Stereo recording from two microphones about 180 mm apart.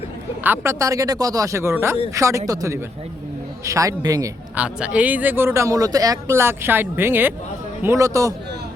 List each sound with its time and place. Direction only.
0.4 s a man's voice: 15° right (ahead or behind)
4.5 s speech: 5° right (ahead or behind)